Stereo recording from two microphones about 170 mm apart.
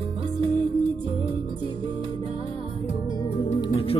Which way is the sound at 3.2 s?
30° left (ahead or behind).